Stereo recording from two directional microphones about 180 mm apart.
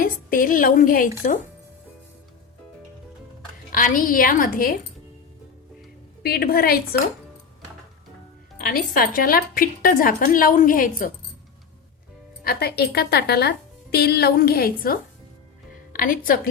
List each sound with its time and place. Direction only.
0.0 s a woman's voice: 50° left (ahead or behind)
3.7 s a woman's voice: 50° left (ahead or behind)
6.2 s speech: 55° left (ahead or behind)
8.5 s a woman's voice: 50° left (ahead or behind)
12.4 s a woman's voice: 60° left (ahead or behind)